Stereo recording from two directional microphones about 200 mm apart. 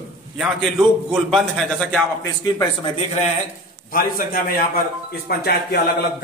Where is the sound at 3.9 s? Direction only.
45° left (ahead or behind).